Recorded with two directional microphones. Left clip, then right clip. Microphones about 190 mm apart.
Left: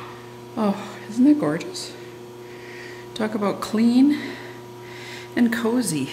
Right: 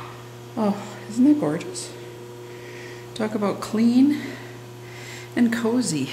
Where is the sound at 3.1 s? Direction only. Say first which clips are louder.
Left 1 dB; centre (ahead or behind).